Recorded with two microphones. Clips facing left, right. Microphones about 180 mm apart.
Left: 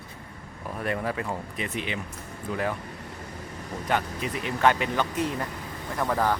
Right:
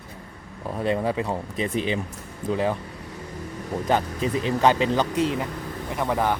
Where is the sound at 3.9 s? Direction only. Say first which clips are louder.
Right 4 dB; 30° right (ahead or behind).